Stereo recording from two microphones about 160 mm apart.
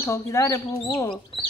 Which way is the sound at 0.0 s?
15° left (ahead or behind).